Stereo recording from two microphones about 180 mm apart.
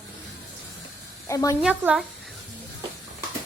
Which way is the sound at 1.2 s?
15° left (ahead or behind).